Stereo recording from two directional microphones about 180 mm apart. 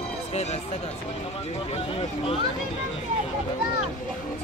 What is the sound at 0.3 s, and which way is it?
Speech, 40° left (ahead or behind).